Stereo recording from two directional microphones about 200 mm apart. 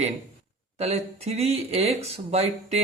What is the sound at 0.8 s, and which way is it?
Speech, 30° right (ahead or behind).